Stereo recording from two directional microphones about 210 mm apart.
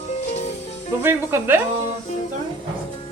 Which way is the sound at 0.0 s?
30° left (ahead or behind).